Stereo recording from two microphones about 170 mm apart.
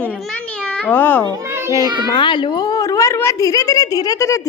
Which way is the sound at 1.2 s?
20° right (ahead or behind).